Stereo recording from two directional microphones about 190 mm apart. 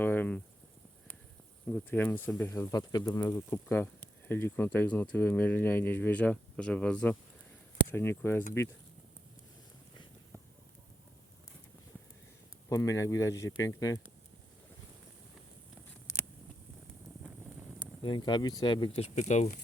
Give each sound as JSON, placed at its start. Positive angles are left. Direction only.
{"t": 0.0, "sound": "a sound", "side_deg": 10}
{"t": 1.6, "sound": "speech", "side_deg": 10}
{"t": 12.6, "sound": "speech", "side_deg": 15}
{"t": 18.0, "sound": "speech", "side_deg": 25}